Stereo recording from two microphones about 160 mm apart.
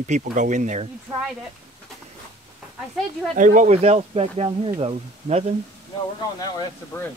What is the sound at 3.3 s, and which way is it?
Speech, 55° right (ahead or behind).